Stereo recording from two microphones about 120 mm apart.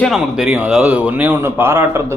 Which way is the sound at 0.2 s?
5° right (ahead or behind).